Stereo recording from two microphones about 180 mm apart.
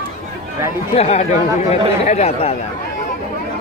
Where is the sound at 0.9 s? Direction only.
35° left (ahead or behind).